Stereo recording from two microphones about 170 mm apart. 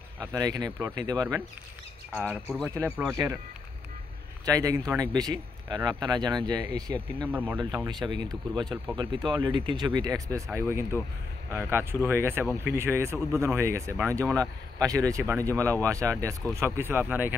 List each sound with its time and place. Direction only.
0.2 s speech: 20° right (ahead or behind)
2.1 s speech: 10° right (ahead or behind)
4.5 s speech: 20° right (ahead or behind)
7.2 s speech: 10° right (ahead or behind)
7.5 s speech: 25° right (ahead or behind); by 17.3 s 10° right (ahead or behind)